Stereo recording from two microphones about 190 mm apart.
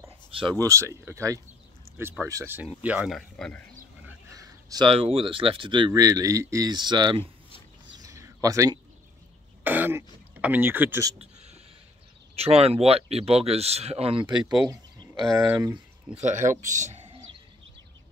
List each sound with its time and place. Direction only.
0.3 s speech: 25° right (ahead or behind); by 3.6 s 5° left (ahead or behind)
4.3 s speech: 20° right (ahead or behind)
8.0 s a sound: 20° right (ahead or behind)
9.6 s throat clearing: 10° right (ahead or behind)
11.1 s a sound: 35° right (ahead or behind)
12.4 s speech: 30° right (ahead or behind); by 16.2 s 10° right (ahead or behind)
16.2 s speech: 40° right (ahead or behind)